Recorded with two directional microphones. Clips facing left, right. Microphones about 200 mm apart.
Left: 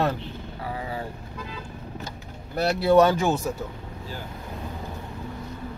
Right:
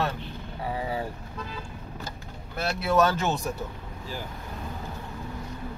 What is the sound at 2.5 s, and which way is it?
Speech, 35° left (ahead or behind).